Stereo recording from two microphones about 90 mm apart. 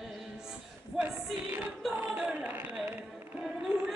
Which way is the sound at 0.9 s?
20° right (ahead or behind).